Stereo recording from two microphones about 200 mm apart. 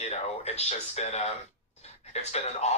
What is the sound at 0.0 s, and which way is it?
Speech, 35° left (ahead or behind).